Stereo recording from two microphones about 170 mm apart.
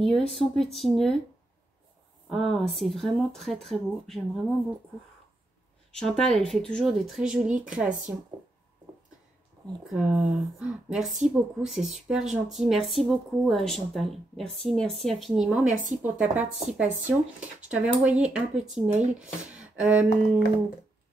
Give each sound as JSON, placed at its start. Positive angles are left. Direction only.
{"t": 0.0, "sound": "speech", "side_deg": 0}
{"t": 2.2, "sound": "speech", "side_deg": 0}
{"t": 5.9, "sound": "speech", "side_deg": 5}
{"t": 9.8, "sound": "speech", "side_deg": -5}
{"t": 15.7, "sound": "a woman's voice", "side_deg": -50}
{"t": 16.0, "sound": "speech", "side_deg": -10}